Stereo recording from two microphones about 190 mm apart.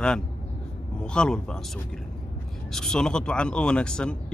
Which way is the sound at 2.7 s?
5° left (ahead or behind).